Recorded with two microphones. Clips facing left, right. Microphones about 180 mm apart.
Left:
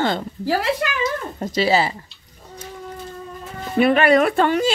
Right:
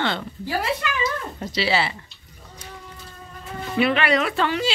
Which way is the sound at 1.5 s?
40° left (ahead or behind).